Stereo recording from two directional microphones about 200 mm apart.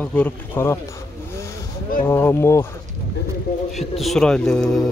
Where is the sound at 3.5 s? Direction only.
45° left (ahead or behind).